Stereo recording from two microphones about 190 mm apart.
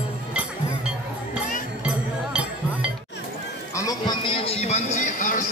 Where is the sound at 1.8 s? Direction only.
5° right (ahead or behind).